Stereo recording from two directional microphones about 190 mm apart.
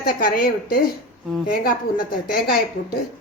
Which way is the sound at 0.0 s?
50° left (ahead or behind).